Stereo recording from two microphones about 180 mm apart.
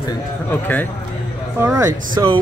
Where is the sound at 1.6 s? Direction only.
20° right (ahead or behind).